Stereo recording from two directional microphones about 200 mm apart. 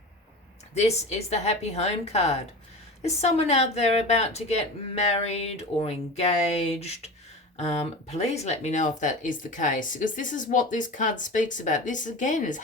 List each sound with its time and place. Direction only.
0.7 s speech: 30° left (ahead or behind)